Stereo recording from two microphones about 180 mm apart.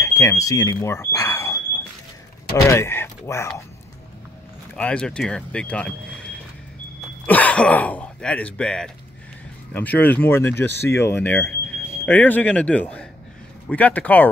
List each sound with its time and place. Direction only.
0.0 s speech: 15° left (ahead or behind)
4.7 s speech: 5° left (ahead or behind)